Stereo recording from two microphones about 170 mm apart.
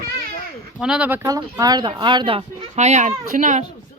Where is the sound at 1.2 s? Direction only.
20° right (ahead or behind); by 3.6 s 50° right (ahead or behind).